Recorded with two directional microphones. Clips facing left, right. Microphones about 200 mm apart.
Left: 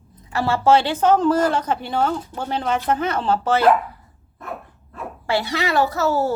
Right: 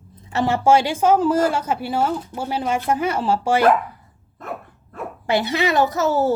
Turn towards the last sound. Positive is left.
turn(degrees=-20)  # may be behind; listen again after turning